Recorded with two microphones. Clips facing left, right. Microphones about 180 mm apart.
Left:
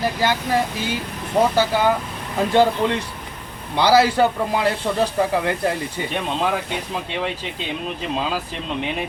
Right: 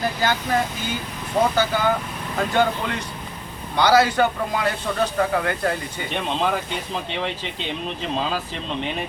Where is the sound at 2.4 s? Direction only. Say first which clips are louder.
Left 4 dB; 30° left (ahead or behind).